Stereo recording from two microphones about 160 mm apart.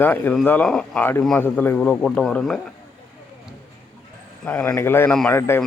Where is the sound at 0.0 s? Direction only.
10° left (ahead or behind).